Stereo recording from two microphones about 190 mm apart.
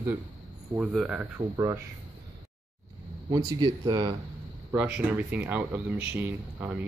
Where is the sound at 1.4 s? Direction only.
20° right (ahead or behind).